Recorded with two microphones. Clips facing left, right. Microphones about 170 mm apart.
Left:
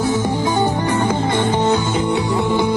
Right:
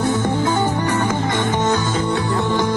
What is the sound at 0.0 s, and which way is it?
Music, 10° left (ahead or behind).